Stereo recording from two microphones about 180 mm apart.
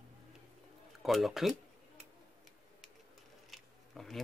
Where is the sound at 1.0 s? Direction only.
Centre (ahead or behind).